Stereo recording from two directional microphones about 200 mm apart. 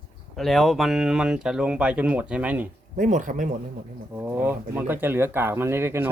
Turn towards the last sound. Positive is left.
turn(degrees=-10)  # may be behind; listen again after turning